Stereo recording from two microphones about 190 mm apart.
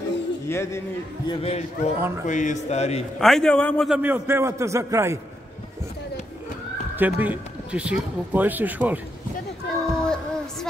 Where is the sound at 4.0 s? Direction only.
10° right (ahead or behind).